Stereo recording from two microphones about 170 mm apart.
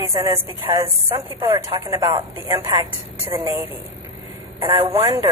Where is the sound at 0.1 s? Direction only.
20° right (ahead or behind).